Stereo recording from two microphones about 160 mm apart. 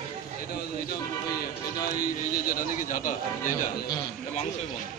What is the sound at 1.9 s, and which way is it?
A man's voice, 60° left (ahead or behind).